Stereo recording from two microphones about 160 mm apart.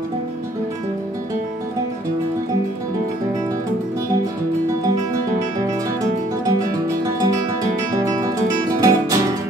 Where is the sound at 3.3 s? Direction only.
20° right (ahead or behind).